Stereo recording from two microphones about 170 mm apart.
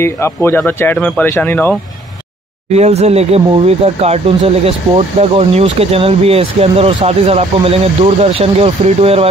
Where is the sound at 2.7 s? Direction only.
40° right (ahead or behind).